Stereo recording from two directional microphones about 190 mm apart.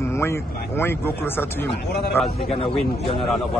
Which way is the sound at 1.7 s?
60° left (ahead or behind).